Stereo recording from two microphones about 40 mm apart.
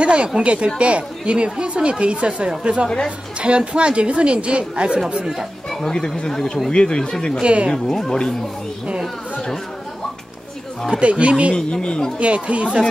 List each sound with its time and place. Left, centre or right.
0.0 s a sound: right
0.4 s a woman's voice: right
5.3 s speech: centre
5.9 s a woman's voice: centre
7.4 s speech: right
7.7 s a woman's voice: centre
10.9 s a woman's voice: right
11.5 s speech: left
12.2 s a woman's voice: right